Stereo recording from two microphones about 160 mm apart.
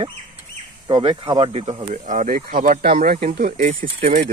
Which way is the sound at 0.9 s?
30° right (ahead or behind).